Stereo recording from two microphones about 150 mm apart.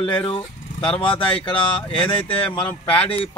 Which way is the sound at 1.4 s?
35° left (ahead or behind).